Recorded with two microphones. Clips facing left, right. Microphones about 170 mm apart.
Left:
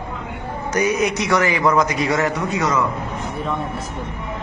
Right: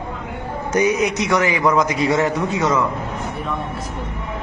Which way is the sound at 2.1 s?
25° right (ahead or behind).